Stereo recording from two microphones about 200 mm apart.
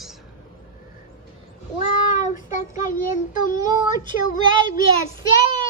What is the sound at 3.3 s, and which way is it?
Child singing, 40° left (ahead or behind).